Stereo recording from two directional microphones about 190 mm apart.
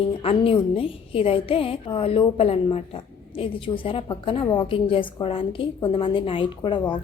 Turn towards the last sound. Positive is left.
turn(degrees=25)  # may be behind; listen again after turning